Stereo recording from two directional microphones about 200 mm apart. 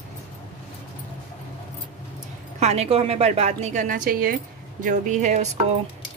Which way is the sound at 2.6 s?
30° right (ahead or behind).